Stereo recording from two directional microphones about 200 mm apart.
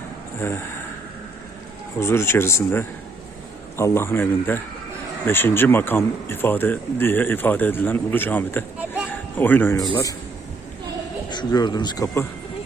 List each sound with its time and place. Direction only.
0.4 s speech: 10° left (ahead or behind)
2.0 s speech: 10° left (ahead or behind)
11.3 s speech: 20° left (ahead or behind)